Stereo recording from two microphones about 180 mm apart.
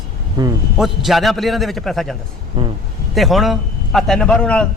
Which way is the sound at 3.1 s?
Centre (ahead or behind).